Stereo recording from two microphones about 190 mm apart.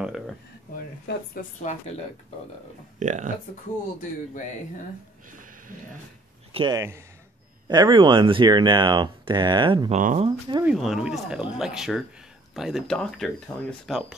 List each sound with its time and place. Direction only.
1.1 s speech: 65° left (ahead or behind)
1.7 s speech: 40° left (ahead or behind)
3.0 s speech: 40° right (ahead or behind)
5.3 s a sound: 45° right (ahead or behind)
6.5 s speech: 25° right (ahead or behind)
9.9 s speech: 40° right (ahead or behind)
10.6 s speech: 5° right (ahead or behind)